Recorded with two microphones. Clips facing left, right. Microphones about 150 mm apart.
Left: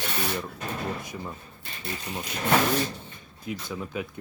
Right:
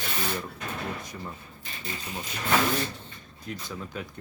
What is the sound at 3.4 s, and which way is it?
Speech, 5° left (ahead or behind).